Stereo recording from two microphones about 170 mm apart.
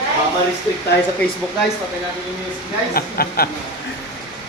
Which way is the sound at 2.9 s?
60° left (ahead or behind).